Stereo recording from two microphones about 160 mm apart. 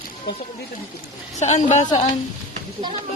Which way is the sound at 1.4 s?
45° left (ahead or behind).